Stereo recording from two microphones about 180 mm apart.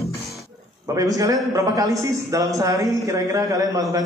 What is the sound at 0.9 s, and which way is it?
A man's voice, 20° right (ahead or behind).